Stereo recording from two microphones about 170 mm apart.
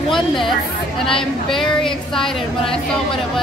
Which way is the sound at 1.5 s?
Centre (ahead or behind).